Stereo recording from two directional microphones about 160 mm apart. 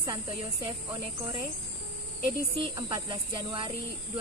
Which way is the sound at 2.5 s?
25° right (ahead or behind).